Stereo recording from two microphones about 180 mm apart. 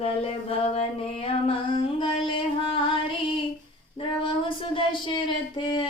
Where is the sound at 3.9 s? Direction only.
30° left (ahead or behind).